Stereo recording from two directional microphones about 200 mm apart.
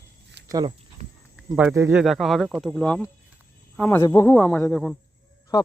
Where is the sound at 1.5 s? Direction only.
10° right (ahead or behind); by 5.0 s 5° left (ahead or behind).